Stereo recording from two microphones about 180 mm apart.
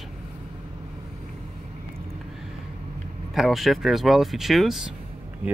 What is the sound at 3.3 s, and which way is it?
Speech, centre (ahead or behind).